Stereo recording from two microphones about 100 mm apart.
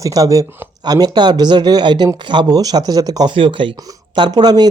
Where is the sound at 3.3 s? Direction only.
55° right (ahead or behind).